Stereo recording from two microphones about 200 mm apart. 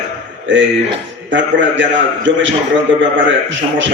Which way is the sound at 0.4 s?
70° right (ahead or behind).